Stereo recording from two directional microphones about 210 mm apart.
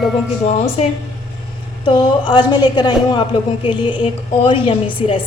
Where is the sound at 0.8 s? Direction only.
30° left (ahead or behind).